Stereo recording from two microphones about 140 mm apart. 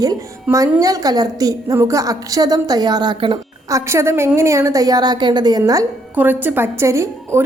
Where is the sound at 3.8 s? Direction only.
20° right (ahead or behind).